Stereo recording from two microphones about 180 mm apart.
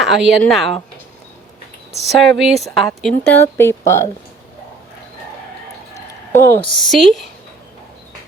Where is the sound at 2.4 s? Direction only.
Centre (ahead or behind).